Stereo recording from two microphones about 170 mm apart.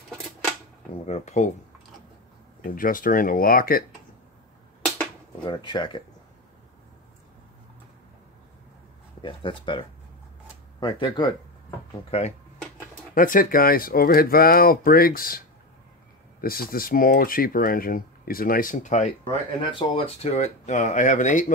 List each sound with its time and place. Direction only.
1.0 s speech: 40° left (ahead or behind)
2.6 s speech: 55° left (ahead or behind)
5.4 s speech: 25° left (ahead or behind)
9.2 s speech: 30° left (ahead or behind)
12.1 s speech: 40° left (ahead or behind)
13.1 s speech: 55° left (ahead or behind)
19.6 s speech: 30° left (ahead or behind); by 21.5 s 45° left (ahead or behind)